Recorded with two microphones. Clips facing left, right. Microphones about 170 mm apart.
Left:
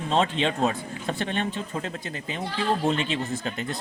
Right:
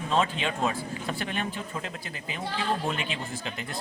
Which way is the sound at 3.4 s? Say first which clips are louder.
Left 5 dB; 40° left (ahead or behind).